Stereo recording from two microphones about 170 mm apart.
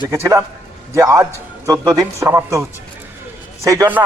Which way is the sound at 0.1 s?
15° right (ahead or behind).